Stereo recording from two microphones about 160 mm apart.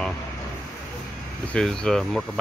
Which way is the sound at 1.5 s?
5° left (ahead or behind).